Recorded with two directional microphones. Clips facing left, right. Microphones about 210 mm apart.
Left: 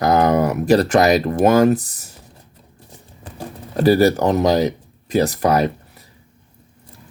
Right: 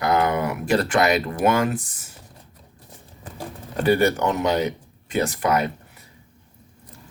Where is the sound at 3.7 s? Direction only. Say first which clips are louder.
Left 5 dB; 35° left (ahead or behind).